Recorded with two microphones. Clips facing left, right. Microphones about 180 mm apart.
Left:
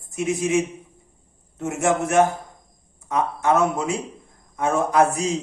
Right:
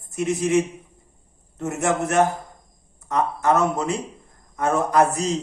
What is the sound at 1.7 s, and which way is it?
A man's voice, 5° left (ahead or behind).